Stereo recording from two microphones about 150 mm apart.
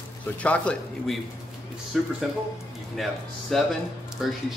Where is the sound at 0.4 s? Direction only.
10° left (ahead or behind).